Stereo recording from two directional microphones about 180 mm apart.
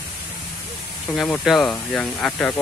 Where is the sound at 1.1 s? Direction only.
Centre (ahead or behind).